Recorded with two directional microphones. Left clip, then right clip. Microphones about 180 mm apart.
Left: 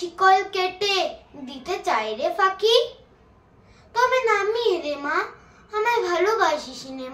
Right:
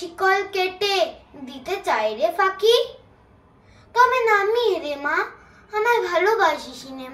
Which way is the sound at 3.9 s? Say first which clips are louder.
Right 3 dB; 15° left (ahead or behind).